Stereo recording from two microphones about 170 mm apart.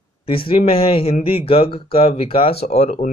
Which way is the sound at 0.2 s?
30° left (ahead or behind).